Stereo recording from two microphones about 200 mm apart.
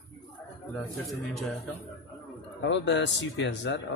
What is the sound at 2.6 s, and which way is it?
Speech, 65° left (ahead or behind).